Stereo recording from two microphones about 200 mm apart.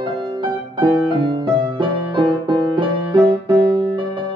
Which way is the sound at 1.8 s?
25° right (ahead or behind).